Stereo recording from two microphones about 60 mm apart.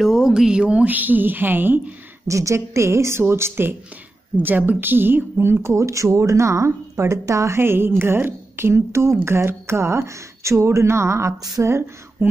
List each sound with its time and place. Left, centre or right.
0.0 s a woman's voice: centre; by 2.0 s right
2.2 s speech: right
4.4 s speech: right
11.6 s a sound: right